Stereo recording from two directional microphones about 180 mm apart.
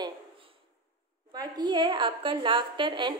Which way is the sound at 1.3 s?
20° right (ahead or behind).